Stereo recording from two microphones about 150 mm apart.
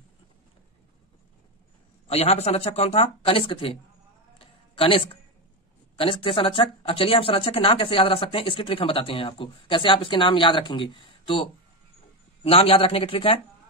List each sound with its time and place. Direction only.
2.0 s speech: 45° left (ahead or behind)
4.4 s a sound: 35° left (ahead or behind)
5.9 s speech: 35° left (ahead or behind)